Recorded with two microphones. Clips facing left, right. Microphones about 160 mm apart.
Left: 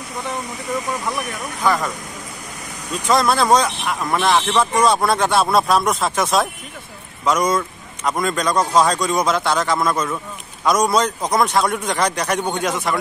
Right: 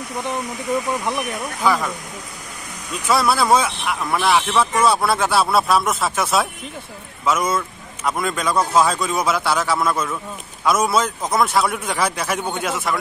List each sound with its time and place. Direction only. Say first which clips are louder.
1.6 s a man's voice: even; 5° right (ahead or behind)
3.1 s a man's voice: left 1 dB; 5° right (ahead or behind)